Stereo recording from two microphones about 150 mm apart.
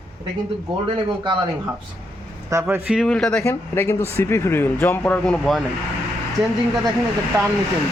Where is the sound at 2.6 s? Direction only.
5° right (ahead or behind).